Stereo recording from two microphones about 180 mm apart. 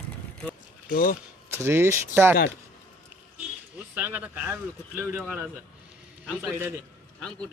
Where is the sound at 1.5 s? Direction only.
15° right (ahead or behind).